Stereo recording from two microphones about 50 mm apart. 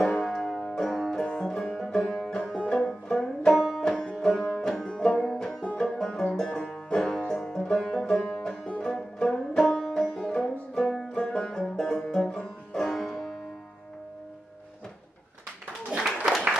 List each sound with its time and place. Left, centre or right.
0.3 s music: centre
3.1 s banjo: centre
3.5 s music: centre
3.8 s music: centre
11.1 s banjo: centre